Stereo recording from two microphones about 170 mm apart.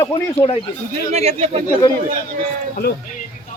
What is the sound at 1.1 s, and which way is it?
Speech, 40° right (ahead or behind).